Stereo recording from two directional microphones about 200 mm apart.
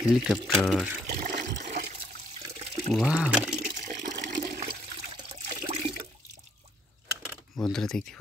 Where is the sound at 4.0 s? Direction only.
60° right (ahead or behind).